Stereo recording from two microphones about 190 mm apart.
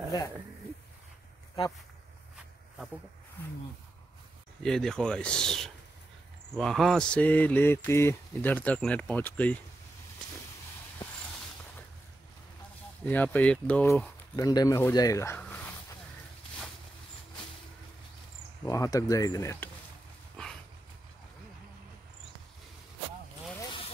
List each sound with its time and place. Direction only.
4.6 s speech: 5° left (ahead or behind)
6.5 s mantra: centre (ahead or behind)
13.0 s mantra: 10° left (ahead or behind)
14.3 s speech: 20° left (ahead or behind)
18.7 s mantra: 15° left (ahead or behind)
20.4 s dog: 5° left (ahead or behind)
23.6 s vehicle: 25° left (ahead or behind)